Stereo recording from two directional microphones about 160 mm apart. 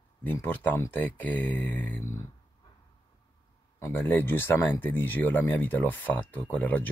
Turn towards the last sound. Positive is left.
turn(degrees=10)  # may be behind; listen again after turning